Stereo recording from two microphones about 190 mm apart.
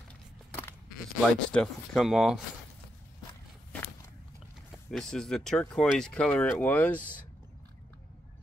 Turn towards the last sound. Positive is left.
turn(degrees=10)  # may be behind; listen again after turning